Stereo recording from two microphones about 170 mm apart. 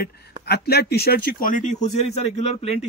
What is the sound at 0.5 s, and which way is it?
A man's voice, 70° left (ahead or behind).